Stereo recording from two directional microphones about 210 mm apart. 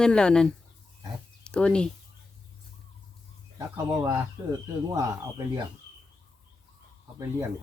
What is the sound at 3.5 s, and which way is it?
Speech, 20° right (ahead or behind).